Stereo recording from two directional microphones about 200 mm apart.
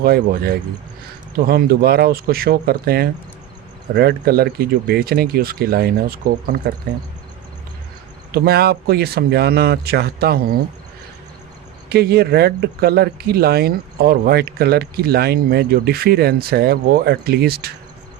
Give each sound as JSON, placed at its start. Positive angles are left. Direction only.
{"t": 0.0, "sound": "speech", "side_deg": -50}
{"t": 8.3, "sound": "speech", "side_deg": -50}
{"t": 11.9, "sound": "speech", "side_deg": -50}